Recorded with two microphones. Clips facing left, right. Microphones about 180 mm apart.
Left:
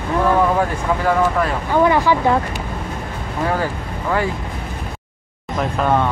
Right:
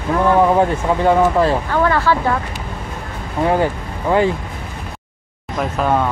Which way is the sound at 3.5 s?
20° right (ahead or behind).